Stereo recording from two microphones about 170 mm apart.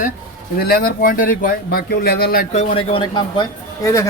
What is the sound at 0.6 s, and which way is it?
Speech, 65° left (ahead or behind).